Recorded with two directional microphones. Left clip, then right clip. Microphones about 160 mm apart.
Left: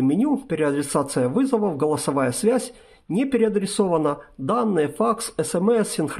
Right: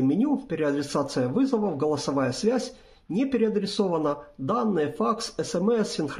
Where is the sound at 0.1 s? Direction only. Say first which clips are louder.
Left 3 dB; 30° left (ahead or behind).